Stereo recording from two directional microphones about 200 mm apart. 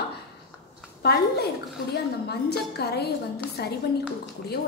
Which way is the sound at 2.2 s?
55° left (ahead or behind).